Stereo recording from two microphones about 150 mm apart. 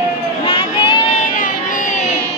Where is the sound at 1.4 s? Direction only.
60° left (ahead or behind).